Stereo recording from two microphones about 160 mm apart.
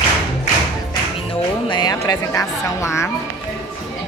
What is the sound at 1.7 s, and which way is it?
Speech, 25° left (ahead or behind).